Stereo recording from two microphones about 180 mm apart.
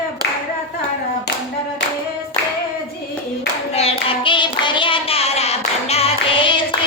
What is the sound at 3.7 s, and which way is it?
Child singing, 35° left (ahead or behind).